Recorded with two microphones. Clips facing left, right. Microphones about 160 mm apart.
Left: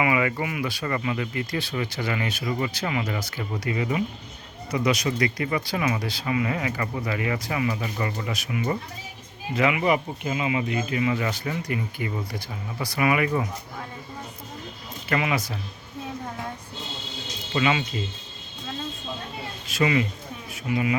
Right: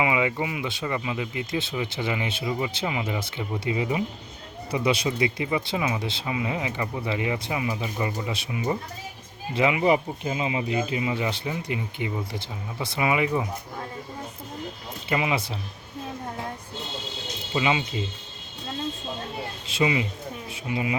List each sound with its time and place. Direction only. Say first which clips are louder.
0.0 s speech: left 1 dB; 15° right (ahead or behind)
0.9 s speech: left 1 dB; 10° right (ahead or behind)
3.2 s speech: right 1 dB; 25° right (ahead or behind)
4.7 s speech: even; 30° right (ahead or behind)
5.2 s speech: even; 15° right (ahead or behind)
15.1 s speech: even; 15° right (ahead or behind)
17.5 s speech: left 1 dB; 20° right (ahead or behind)
19.8 s speech: left 1 dB; 15° right (ahead or behind)